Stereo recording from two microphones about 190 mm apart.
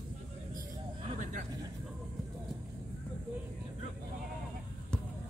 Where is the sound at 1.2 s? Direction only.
40° right (ahead or behind).